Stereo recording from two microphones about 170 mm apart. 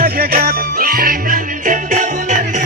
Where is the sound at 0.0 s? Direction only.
60° right (ahead or behind).